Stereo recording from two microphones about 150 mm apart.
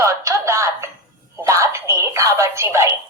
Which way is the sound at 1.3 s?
20° right (ahead or behind).